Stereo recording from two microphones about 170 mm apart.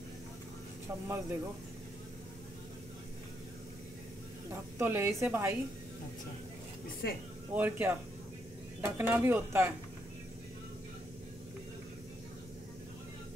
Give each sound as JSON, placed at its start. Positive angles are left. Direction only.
{"t": 1.0, "sound": "a woman's voice", "side_deg": -15}
{"t": 4.5, "sound": "a woman's voice", "side_deg": -15}
{"t": 7.5, "sound": "a woman's voice", "side_deg": -10}